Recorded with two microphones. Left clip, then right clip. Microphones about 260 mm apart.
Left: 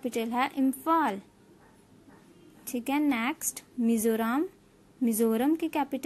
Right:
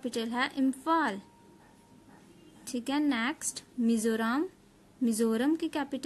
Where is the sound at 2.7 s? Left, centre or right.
Centre.